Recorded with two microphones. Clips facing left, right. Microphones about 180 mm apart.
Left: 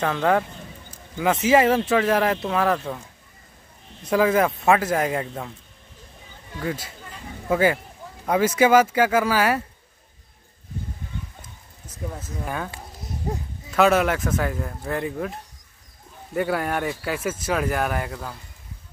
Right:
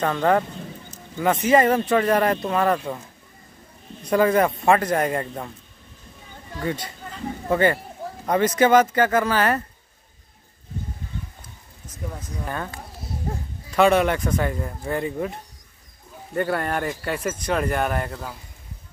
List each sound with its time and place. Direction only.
0.0 s speech: 5° left (ahead or behind)
4.0 s speech: 5° left (ahead or behind)
6.6 s speech: 5° left (ahead or behind)
12.2 s speech: 5° left (ahead or behind)
12.7 s music: 20° left (ahead or behind)
13.7 s speech: 5° left (ahead or behind)
16.3 s speech: 5° left (ahead or behind)